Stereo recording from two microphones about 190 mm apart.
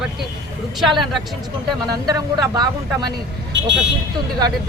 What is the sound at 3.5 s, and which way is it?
Speech, 65° right (ahead or behind).